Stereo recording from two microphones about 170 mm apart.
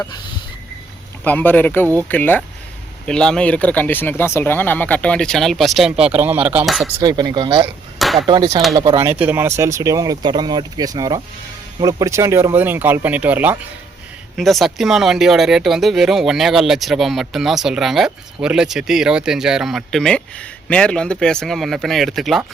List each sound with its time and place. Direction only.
1.2 s speech: 10° left (ahead or behind); by 6.9 s 5° right (ahead or behind)
7.0 s speech: 25° right (ahead or behind)
7.9 s a sound: centre (ahead or behind)
8.3 s speech: 25° right (ahead or behind); by 13.6 s 10° right (ahead or behind)
14.3 s speech: centre (ahead or behind)